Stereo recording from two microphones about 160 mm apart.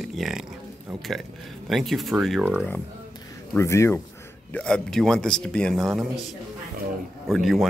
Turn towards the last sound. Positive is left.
turn(degrees=0)  # may be behind; listen again after turning